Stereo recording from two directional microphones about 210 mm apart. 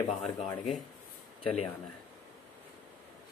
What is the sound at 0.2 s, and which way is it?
Speech, centre (ahead or behind).